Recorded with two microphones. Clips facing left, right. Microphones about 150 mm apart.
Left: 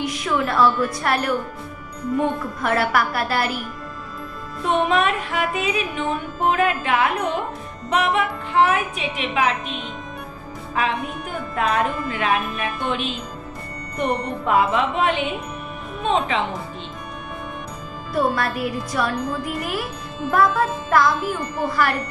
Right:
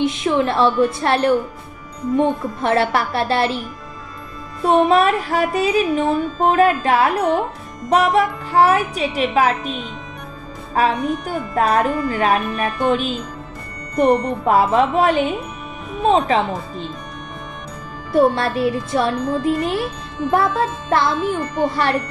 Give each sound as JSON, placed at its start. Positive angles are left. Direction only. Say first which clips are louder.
{"t": 0.0, "sound": "a woman's voice", "louder": "right 5 dB", "side_deg": -25}
{"t": 4.6, "sound": "music", "louder": "right 5 dB", "side_deg": -35}
{"t": 10.8, "sound": "music", "louder": "right 6 dB", "side_deg": -40}
{"t": 18.1, "sound": "a woman's voice", "louder": "right 6 dB", "side_deg": -25}